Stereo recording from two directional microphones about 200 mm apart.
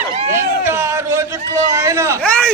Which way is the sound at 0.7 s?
15° right (ahead or behind).